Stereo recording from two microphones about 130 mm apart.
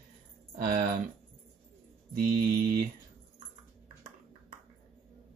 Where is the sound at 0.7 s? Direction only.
90° right.